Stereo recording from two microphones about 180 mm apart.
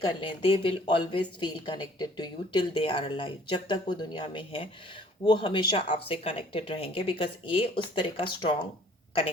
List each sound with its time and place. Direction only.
0.1 s speech: 30° left (ahead or behind)